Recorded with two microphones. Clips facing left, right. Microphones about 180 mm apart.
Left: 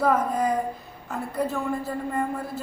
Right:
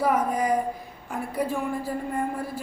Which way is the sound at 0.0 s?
10° right (ahead or behind).